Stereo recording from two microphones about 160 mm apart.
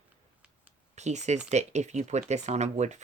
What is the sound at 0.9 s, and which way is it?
Speech, 45° right (ahead or behind).